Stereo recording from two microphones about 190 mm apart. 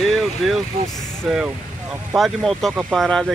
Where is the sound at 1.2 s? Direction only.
5° right (ahead or behind).